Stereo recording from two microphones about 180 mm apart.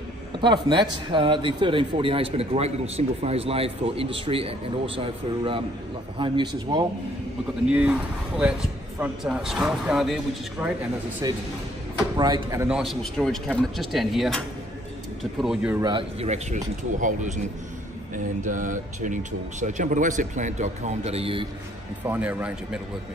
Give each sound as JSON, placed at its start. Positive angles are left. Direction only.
{"t": 0.4, "sound": "speech", "side_deg": -25}
{"t": 7.6, "sound": "a man's voice", "side_deg": -5}
{"t": 11.2, "sound": "speech", "side_deg": -20}
{"t": 12.6, "sound": "a man's voice", "side_deg": 0}
{"t": 15.4, "sound": "a man's voice", "side_deg": -5}
{"t": 15.8, "sound": "a man's voice", "side_deg": -30}
{"t": 22.0, "sound": "speech", "side_deg": -10}